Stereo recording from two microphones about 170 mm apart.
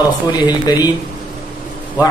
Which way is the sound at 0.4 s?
25° left (ahead or behind).